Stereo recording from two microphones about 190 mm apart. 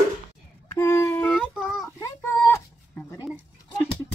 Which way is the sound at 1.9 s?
15° left (ahead or behind).